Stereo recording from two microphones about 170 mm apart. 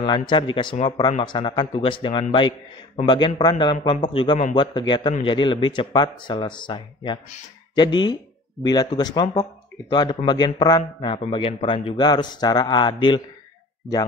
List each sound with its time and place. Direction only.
0.0 s speech: 30° left (ahead or behind)